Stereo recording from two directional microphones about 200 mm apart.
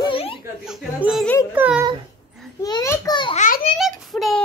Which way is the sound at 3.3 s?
40° left (ahead or behind).